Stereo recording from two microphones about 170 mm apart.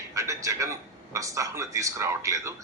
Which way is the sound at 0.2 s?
15° right (ahead or behind).